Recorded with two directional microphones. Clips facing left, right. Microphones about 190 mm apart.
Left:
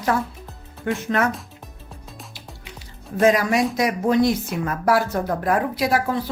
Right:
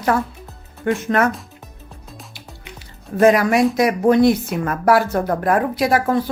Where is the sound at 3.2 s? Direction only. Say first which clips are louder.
Right 4 dB; 60° right (ahead or behind).